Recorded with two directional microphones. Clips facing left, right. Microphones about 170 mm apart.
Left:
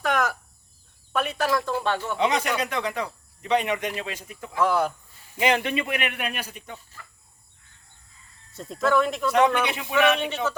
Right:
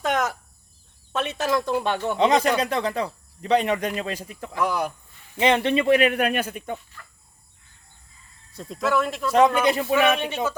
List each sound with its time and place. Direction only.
0.0 s a sound: 20° right (ahead or behind)
1.1 s speech: 25° right (ahead or behind)
2.1 s speech: 35° right (ahead or behind)
4.5 s speech: 15° right (ahead or behind)
5.4 s speech: 30° right (ahead or behind)
6.2 s speech: 55° right (ahead or behind)
8.5 s speech: centre (ahead or behind)